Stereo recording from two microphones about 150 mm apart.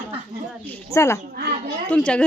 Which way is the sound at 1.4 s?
90° right.